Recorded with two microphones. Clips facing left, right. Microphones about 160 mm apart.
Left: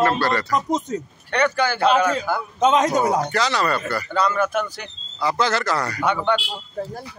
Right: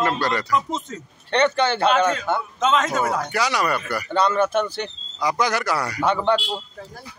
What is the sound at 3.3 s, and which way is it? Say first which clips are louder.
Speech: left 1 dB; 10° right (ahead or behind).